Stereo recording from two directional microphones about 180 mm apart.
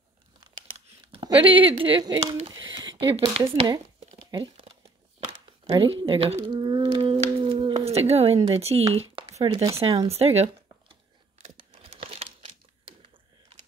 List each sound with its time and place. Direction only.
0.7 s a sound: 30° right (ahead or behind)
2.1 s speech: 35° right (ahead or behind)
2.5 s a sound: 25° right (ahead or behind)
3.1 s speech: 30° right (ahead or behind)
4.3 s crumpling: 25° right (ahead or behind)
5.7 s humming: 30° right (ahead or behind)
8.5 s speech: 35° right (ahead or behind)
9.0 s crumpling: 30° right (ahead or behind)
9.8 s speech: 30° right (ahead or behind)
11.4 s crumpling: 35° right (ahead or behind)